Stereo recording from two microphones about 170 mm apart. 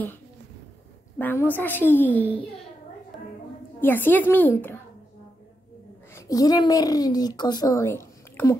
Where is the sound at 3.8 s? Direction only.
10° left (ahead or behind).